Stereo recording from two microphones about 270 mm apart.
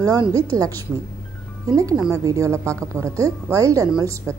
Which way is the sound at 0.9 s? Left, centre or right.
Centre.